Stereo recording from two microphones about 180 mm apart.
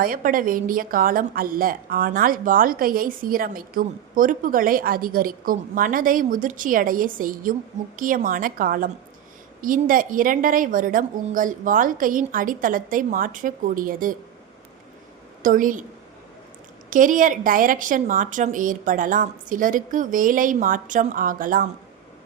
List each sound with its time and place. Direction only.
0.0 s a woman's voice: 50° right (ahead or behind)
15.4 s a woman's voice: 45° right (ahead or behind)
16.9 s a woman's voice: 45° right (ahead or behind)